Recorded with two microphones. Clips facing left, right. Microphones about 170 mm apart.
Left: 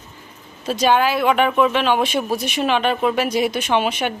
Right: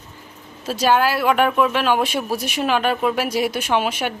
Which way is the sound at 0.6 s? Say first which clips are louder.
Left 1 dB; 5° right (ahead or behind).